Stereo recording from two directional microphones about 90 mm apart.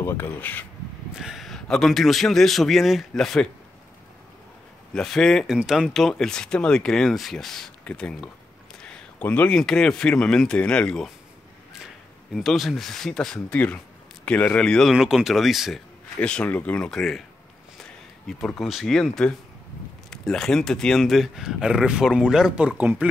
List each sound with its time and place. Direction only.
0.0 s speech: 25° left (ahead or behind)
1.1 s speech: 5° right (ahead or behind)
4.9 s speech: 5° left (ahead or behind)
5.6 s speech: 5° right (ahead or behind)
7.8 s speech: 15° left (ahead or behind)
8.7 s a sound: 10° left (ahead or behind)
9.2 s speech: 15° left (ahead or behind)
12.4 s speech: centre (ahead or behind)
14.9 s speech: 5° right (ahead or behind)
16.2 s speech: 15° left (ahead or behind)
16.9 s speech: 5° left (ahead or behind)